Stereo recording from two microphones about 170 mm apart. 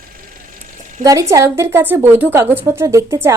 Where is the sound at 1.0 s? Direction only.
20° right (ahead or behind).